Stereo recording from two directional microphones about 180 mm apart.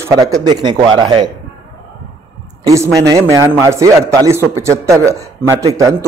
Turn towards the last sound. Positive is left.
turn(degrees=-15)  # may be behind; listen again after turning